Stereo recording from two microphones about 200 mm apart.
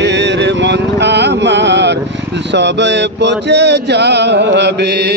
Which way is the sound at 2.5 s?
60° right (ahead or behind).